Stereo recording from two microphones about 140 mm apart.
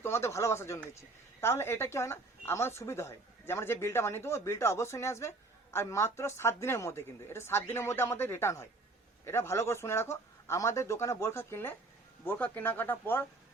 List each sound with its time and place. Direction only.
0.0 s a woman's voice: 20° left (ahead or behind)